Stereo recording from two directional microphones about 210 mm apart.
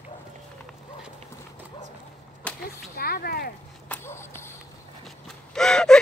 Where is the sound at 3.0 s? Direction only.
45° left (ahead or behind).